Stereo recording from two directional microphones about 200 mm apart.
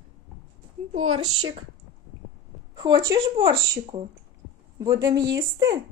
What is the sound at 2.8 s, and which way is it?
Speech, 20° right (ahead or behind).